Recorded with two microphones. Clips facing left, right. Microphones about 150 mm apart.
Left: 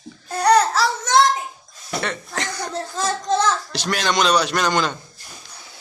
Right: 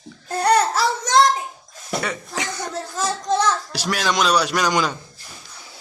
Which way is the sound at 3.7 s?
5° right (ahead or behind).